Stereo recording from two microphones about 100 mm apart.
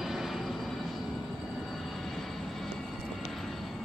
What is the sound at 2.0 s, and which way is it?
Vehicle, centre (ahead or behind).